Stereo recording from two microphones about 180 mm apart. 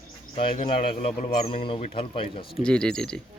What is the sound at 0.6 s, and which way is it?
A man's voice, 30° left (ahead or behind).